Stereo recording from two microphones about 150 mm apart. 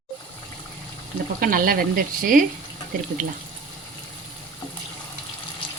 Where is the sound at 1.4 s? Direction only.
70° right (ahead or behind).